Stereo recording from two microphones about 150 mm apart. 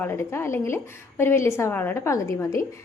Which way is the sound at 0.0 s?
15° left (ahead or behind).